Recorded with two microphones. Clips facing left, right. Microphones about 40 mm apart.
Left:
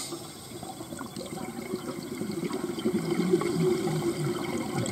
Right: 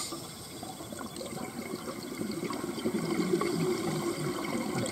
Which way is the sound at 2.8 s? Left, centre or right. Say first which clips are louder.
Left 4 dB; centre.